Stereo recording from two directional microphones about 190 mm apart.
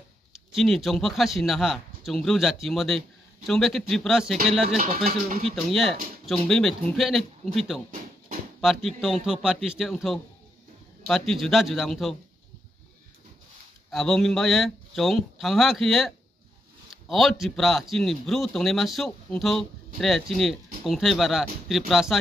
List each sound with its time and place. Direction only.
0.3 s a man's voice: centre (ahead or behind)
4.6 s speech: 45° right (ahead or behind)
5.7 s a man's voice: centre (ahead or behind)
13.8 s a man's voice: centre (ahead or behind)
17.1 s a man's voice: centre (ahead or behind)